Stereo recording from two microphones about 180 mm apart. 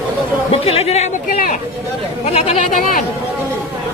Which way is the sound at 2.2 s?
35° left (ahead or behind).